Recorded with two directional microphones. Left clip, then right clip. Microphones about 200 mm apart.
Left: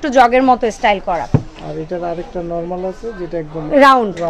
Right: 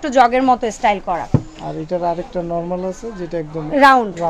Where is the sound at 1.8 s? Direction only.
45° right (ahead or behind).